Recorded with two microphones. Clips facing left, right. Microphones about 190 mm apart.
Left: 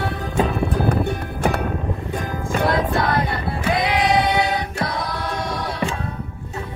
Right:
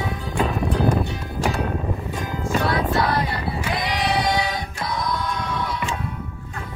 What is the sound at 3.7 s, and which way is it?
Choir, 55° left (ahead or behind).